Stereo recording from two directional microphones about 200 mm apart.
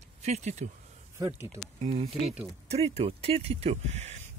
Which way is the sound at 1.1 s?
15° right (ahead or behind).